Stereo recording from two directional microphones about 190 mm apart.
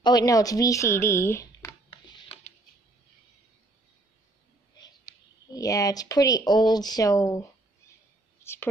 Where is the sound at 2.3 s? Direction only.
35° left (ahead or behind).